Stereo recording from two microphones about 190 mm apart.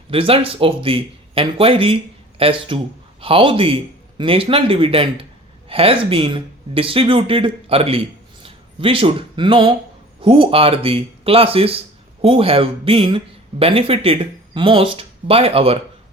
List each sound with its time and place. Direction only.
0.1 s a man's voice: 30° right (ahead or behind)